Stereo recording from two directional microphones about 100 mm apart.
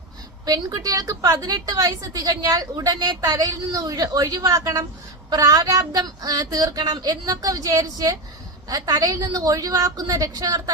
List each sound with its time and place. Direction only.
0.4 s a woman's voice: 40° right (ahead or behind)